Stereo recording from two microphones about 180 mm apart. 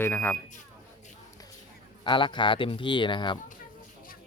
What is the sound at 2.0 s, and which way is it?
Speech, 25° left (ahead or behind).